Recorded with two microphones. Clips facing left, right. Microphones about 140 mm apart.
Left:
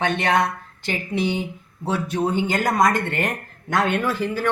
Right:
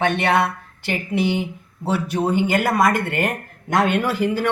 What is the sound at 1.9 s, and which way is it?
Speech, 10° right (ahead or behind).